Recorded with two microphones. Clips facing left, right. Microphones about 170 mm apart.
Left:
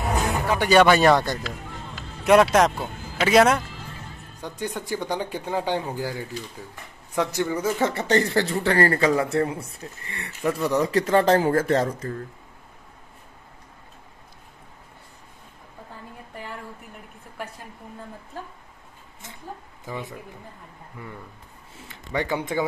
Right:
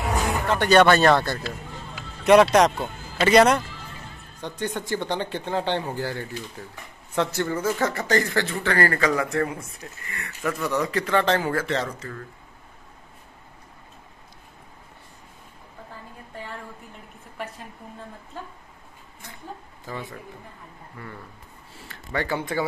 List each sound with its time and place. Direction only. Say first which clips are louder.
0.3 s speech: right 1 dB; 10° left (ahead or behind)
2.0 s speech: right 1 dB; centre (ahead or behind)
7.8 s speech: left 4 dB; 30° left (ahead or behind)
11.6 s speech: left 5 dB; 50° left (ahead or behind)
19.9 s speech: left 1 dB; 20° left (ahead or behind)
21.7 s speech: left 1 dB; 20° left (ahead or behind)